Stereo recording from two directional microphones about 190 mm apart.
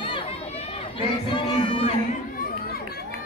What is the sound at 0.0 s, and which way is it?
Chatter, 30° left (ahead or behind).